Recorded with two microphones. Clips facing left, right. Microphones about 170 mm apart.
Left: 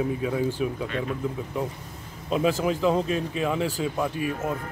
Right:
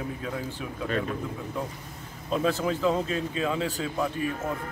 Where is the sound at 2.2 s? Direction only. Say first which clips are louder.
Left 2 dB; 15° left (ahead or behind).